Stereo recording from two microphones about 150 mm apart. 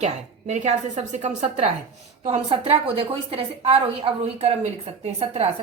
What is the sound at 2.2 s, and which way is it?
A woman's voice, 40° right (ahead or behind).